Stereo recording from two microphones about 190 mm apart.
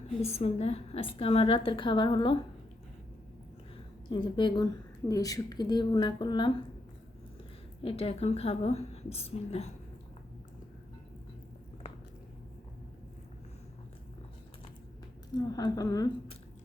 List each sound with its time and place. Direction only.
0.3 s a woman's voice: 35° left (ahead or behind)
4.1 s a woman's voice: 25° left (ahead or behind)
7.8 s a woman's voice: 30° left (ahead or behind)
15.3 s a woman's voice: 20° left (ahead or behind)